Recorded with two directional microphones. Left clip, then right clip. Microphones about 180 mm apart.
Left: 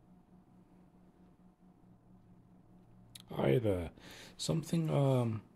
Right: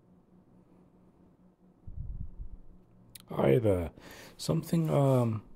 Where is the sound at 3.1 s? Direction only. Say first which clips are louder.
Right 6 dB; 20° right (ahead or behind).